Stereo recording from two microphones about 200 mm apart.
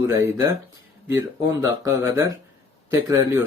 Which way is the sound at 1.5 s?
15° right (ahead or behind).